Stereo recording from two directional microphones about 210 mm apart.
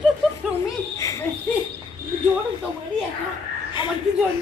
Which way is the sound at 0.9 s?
15° left (ahead or behind).